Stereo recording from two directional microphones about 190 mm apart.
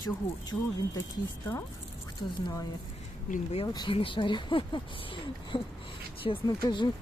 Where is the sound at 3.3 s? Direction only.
30° left (ahead or behind).